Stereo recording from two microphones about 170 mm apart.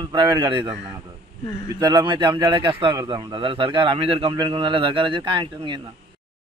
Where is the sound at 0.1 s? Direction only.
25° right (ahead or behind).